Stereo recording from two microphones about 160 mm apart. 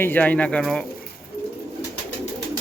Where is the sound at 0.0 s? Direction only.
10° left (ahead or behind).